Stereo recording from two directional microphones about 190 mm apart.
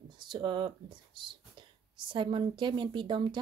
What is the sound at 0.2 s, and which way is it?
Speech, 25° right (ahead or behind).